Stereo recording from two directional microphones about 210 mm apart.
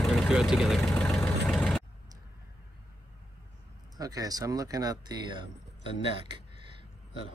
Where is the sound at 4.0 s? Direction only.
15° right (ahead or behind).